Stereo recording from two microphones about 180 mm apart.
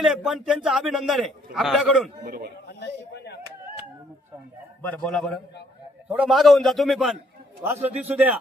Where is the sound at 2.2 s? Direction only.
55° right (ahead or behind).